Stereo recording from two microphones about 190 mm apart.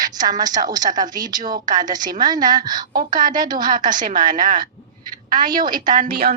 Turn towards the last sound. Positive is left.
turn(degrees=-50)  # may be behind; listen again after turning